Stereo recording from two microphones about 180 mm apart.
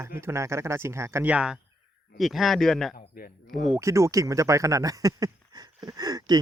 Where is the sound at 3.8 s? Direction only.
15° right (ahead or behind).